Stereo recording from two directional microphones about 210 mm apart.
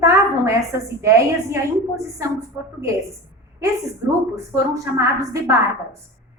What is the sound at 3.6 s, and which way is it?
A woman's voice, 15° right (ahead or behind).